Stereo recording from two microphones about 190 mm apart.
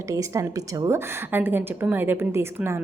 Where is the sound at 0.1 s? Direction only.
15° right (ahead or behind).